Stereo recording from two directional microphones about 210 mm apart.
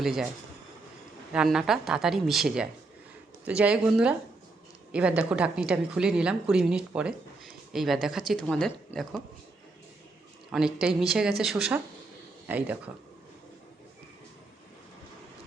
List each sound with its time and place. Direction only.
0.0 s a woman's voice: centre (ahead or behind)
1.3 s a woman's voice: 5° right (ahead or behind)
10.8 s a woman's voice: 5° right (ahead or behind)